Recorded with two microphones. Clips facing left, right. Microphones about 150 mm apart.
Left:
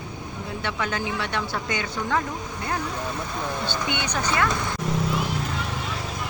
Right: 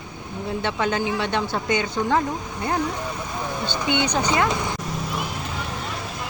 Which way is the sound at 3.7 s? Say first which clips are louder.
Right 5 dB; 20° right (ahead or behind).